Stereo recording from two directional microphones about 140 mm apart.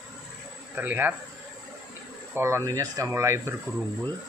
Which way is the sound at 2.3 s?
20° right (ahead or behind).